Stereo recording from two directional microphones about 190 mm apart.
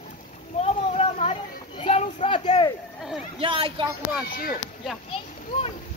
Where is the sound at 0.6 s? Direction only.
35° left (ahead or behind).